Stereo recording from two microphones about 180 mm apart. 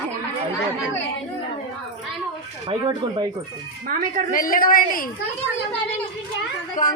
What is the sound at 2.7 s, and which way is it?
Speech, 25° right (ahead or behind).